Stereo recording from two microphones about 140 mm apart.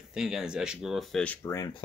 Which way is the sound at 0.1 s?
5° right (ahead or behind).